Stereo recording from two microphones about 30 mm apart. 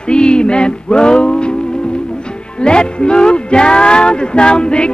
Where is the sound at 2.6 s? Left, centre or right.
Left.